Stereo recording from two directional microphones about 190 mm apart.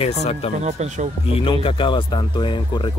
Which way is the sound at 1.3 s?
30° left (ahead or behind).